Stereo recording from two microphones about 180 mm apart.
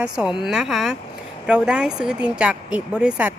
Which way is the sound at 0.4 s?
Centre (ahead or behind).